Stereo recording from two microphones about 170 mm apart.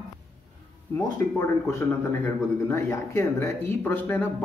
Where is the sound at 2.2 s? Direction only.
15° left (ahead or behind).